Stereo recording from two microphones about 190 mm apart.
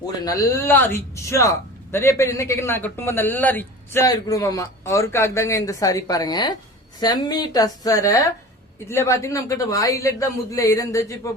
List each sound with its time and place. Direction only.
0.3 s a woman's voice: 15° left (ahead or behind)